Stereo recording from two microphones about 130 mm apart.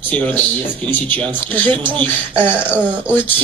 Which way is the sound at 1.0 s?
40° right (ahead or behind).